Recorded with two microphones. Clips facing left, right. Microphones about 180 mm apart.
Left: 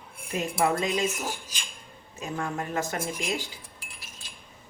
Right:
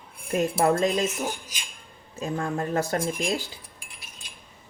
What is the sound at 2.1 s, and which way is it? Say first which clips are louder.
Speech: right 4 dB; 35° right (ahead or behind).